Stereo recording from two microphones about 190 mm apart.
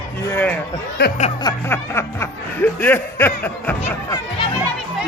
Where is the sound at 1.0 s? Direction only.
60° left (ahead or behind).